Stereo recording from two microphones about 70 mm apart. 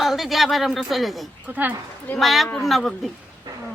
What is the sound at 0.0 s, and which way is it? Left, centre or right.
Speech, centre.